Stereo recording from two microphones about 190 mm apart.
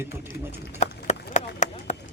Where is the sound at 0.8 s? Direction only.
40° left (ahead or behind).